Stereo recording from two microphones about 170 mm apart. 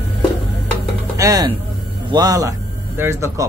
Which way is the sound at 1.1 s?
20° right (ahead or behind).